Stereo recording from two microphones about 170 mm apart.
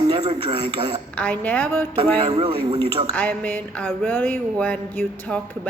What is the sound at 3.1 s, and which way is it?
Speech, 10° left (ahead or behind).